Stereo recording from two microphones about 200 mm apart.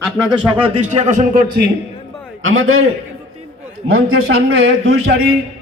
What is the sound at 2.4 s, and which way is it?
Speech, 90° right.